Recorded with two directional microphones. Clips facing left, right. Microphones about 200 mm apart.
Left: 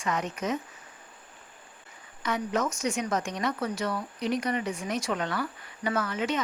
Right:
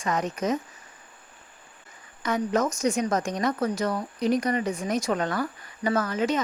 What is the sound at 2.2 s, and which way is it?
A woman's voice, 45° right (ahead or behind).